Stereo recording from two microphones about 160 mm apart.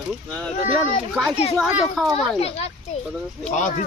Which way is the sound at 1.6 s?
Centre (ahead or behind).